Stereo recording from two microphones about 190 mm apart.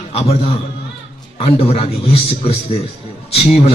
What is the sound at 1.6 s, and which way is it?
A man's voice, 30° left (ahead or behind).